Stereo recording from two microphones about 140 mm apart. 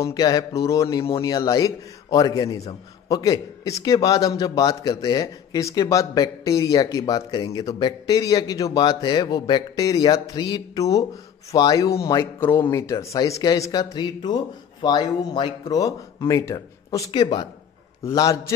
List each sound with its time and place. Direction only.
0.0 s speech: 25° left (ahead or behind)